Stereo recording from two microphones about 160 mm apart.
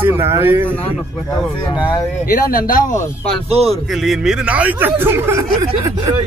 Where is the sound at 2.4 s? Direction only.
60° left (ahead or behind).